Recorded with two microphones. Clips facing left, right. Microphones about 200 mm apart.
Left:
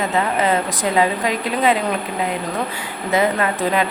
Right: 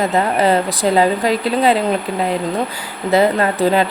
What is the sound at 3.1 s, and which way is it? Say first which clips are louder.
Speech: right 4 dB; 35° right (ahead or behind).